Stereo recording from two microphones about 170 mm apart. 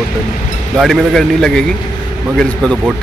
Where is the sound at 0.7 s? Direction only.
Centre (ahead or behind).